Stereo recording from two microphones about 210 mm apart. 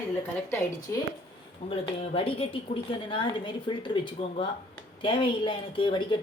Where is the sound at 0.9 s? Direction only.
15° left (ahead or behind).